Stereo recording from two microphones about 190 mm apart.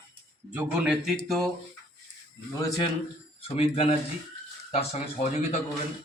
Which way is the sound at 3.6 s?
35° left (ahead or behind).